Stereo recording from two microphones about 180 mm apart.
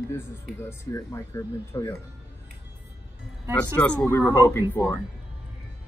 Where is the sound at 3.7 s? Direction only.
10° left (ahead or behind).